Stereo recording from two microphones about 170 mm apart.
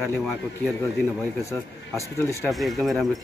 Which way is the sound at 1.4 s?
15° left (ahead or behind).